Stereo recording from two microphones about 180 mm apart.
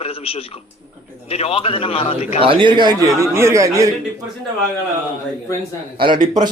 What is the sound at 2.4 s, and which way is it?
Speech, 30° right (ahead or behind).